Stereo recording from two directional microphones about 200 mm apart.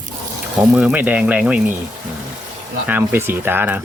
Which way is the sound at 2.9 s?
10° right (ahead or behind).